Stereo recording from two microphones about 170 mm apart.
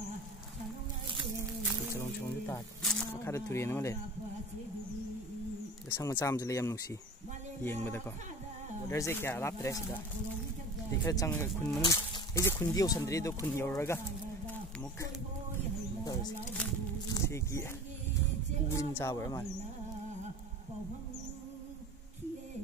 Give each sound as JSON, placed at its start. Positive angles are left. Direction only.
{"t": 2.0, "sound": "music", "side_deg": 15}
{"t": 2.8, "sound": "speech", "side_deg": 5}
{"t": 3.3, "sound": "speech", "side_deg": 15}
{"t": 5.9, "sound": "speech", "side_deg": 10}
{"t": 11.1, "sound": "speech", "side_deg": 15}
{"t": 17.1, "sound": "speech", "side_deg": 15}
{"t": 18.7, "sound": "speech", "side_deg": 15}